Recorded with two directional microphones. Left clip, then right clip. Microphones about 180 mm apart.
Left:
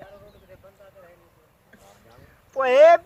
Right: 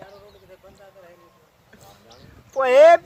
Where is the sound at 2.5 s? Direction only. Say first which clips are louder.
Right 2 dB; 65° right (ahead or behind).